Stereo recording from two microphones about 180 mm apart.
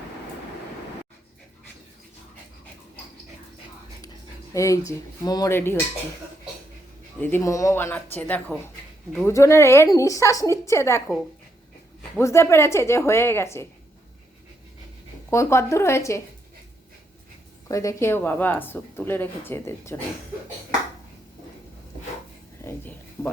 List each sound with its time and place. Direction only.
4.5 s a woman's voice: 15° left (ahead or behind)
7.2 s a woman's voice: 10° left (ahead or behind)
15.3 s a woman's voice: 15° left (ahead or behind)
17.7 s a woman's voice: 20° left (ahead or behind)
22.6 s speech: 10° left (ahead or behind)